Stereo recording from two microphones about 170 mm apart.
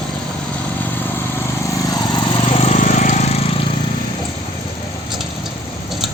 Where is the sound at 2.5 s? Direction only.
40° left (ahead or behind).